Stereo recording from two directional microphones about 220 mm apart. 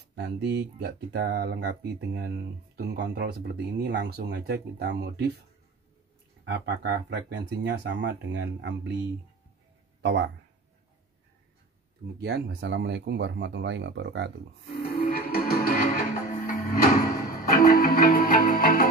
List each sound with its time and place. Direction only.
0.1 s speech: 50° right (ahead or behind)
6.4 s speech: 50° right (ahead or behind)
12.2 s speech: 50° right (ahead or behind)
14.8 s music: 40° left (ahead or behind)